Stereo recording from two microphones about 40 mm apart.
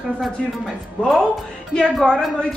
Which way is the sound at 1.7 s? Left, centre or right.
Left.